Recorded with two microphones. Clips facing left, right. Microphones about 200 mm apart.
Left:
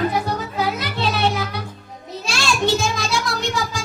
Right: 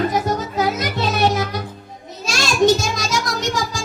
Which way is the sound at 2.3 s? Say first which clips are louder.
Right 5 dB; 40° right (ahead or behind).